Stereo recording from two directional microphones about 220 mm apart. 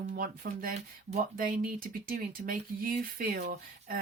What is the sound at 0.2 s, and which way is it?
Speech, 40° right (ahead or behind).